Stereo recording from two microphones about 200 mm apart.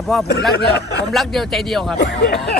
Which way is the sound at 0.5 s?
55° left (ahead or behind).